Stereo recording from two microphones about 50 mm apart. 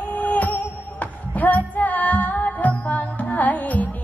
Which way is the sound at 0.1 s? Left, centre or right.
Left.